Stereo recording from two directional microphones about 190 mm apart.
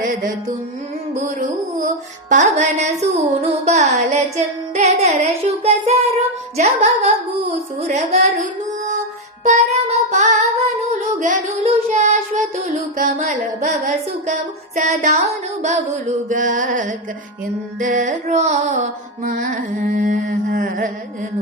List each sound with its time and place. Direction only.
1.1 s a sound: 40° right (ahead or behind)
2.3 s carnatic music: 40° right (ahead or behind)
9.4 s child singing: 35° right (ahead or behind)
14.8 s carnatic music: 40° right (ahead or behind)